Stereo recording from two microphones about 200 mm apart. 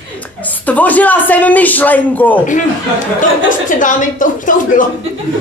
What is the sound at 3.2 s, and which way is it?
Speech, 40° left (ahead or behind).